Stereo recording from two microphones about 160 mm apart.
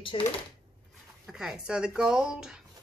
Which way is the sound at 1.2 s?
5° right (ahead or behind).